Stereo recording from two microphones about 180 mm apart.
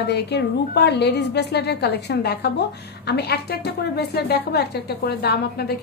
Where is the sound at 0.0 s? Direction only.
70° left (ahead or behind).